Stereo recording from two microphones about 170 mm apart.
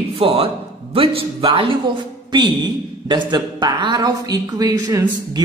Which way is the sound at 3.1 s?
25° right (ahead or behind).